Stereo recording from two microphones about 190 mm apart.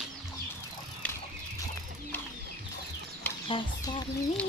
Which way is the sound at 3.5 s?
25° left (ahead or behind).